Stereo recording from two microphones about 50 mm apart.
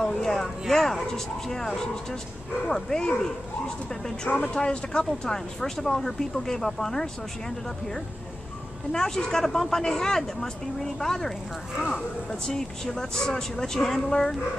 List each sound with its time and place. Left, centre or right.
0.0 s speech: centre